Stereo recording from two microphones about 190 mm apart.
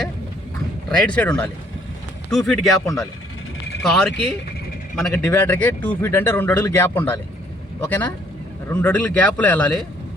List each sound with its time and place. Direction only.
0.9 s speech: 5° left (ahead or behind)
2.4 s speech: 15° left (ahead or behind)
3.8 s speech: 5° left (ahead or behind)